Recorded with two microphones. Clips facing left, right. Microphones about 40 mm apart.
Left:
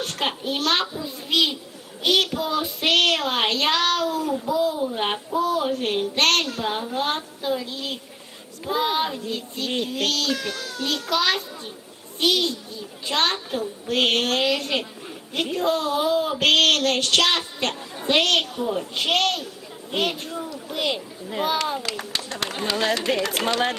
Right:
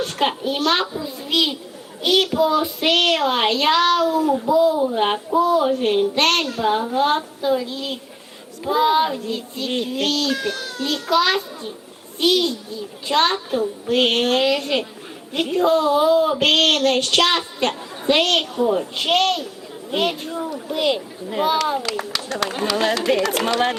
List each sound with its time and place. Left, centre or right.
0.0 s child singing: centre
2.0 s a child's voice: centre
2.2 s child singing: centre
6.9 s speech: centre
10.3 s a child's voice: right
11.1 s child singing: centre
12.2 s speech: centre
13.8 s child singing: centre
15.3 s speech: centre
19.9 s child singing: centre
20.7 s speech: centre
21.2 s child singing: centre
21.8 s speech: right
22.7 s speech: right